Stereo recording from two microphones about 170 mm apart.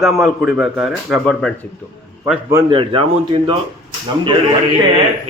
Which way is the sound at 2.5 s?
30° right (ahead or behind).